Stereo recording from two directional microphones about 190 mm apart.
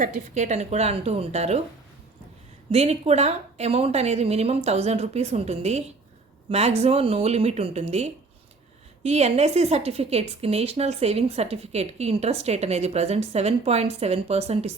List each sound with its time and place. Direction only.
0.0 s a woman's voice: 40° right (ahead or behind)
2.7 s a woman's voice: 35° right (ahead or behind)